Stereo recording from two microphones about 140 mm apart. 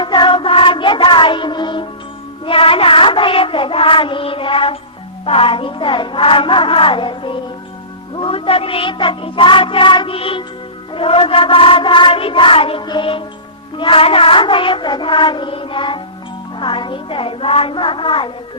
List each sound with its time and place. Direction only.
0.0 s music: 35° left (ahead or behind)
2.5 s child singing: 40° left (ahead or behind)
5.2 s music: 40° left (ahead or behind)